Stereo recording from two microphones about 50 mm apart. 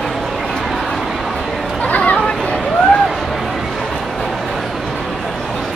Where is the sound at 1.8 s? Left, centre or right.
Left.